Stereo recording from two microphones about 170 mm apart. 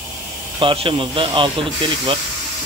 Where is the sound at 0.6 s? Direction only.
30° right (ahead or behind).